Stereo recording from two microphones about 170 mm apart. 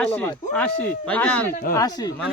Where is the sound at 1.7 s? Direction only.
20° left (ahead or behind).